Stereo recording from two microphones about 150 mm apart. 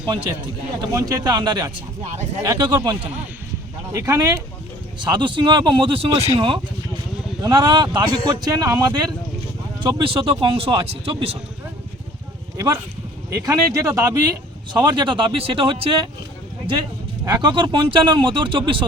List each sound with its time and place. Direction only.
0.0 s a man's voice: 30° right (ahead or behind)
13.3 s speech: 20° right (ahead or behind)
17.2 s a man's voice: 30° right (ahead or behind)